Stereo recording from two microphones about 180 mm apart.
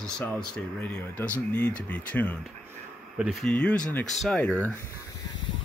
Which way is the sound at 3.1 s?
5° right (ahead or behind).